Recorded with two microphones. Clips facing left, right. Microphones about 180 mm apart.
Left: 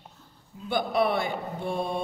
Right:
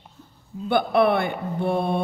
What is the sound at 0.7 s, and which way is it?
A woman's voice, 60° right (ahead or behind).